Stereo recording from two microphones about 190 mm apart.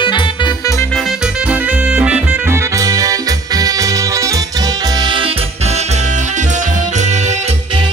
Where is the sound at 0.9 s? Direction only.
Centre (ahead or behind).